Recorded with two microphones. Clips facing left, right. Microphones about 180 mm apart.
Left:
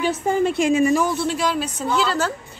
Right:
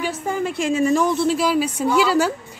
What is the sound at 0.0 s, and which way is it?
Speech, 25° left (ahead or behind).